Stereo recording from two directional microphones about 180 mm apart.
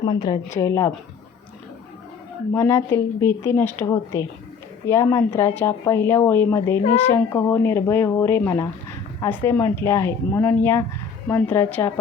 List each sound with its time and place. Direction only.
0.0 s a woman's voice: 25° left (ahead or behind)
2.5 s a woman's voice: 15° left (ahead or behind)